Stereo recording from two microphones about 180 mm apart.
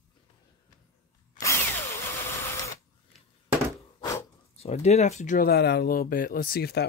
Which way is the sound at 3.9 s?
20° left (ahead or behind).